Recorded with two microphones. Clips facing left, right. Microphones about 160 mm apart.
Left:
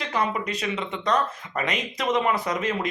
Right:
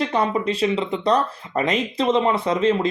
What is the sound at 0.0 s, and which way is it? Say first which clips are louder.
Speech: right 6 dB; 30° right (ahead or behind).